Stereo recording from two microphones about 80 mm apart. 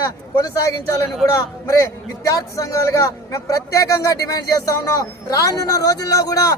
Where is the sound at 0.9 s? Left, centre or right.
Left.